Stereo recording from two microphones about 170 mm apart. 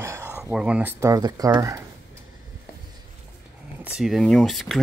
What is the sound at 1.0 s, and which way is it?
Speech, 20° right (ahead or behind).